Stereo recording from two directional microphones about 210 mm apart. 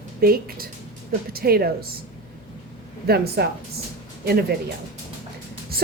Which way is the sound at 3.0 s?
50° right (ahead or behind).